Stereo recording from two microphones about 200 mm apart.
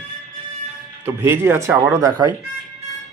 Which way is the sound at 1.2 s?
10° right (ahead or behind).